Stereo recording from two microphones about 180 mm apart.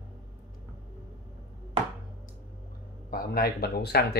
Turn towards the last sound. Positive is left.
turn(degrees=60)  # may be behind; listen again after turning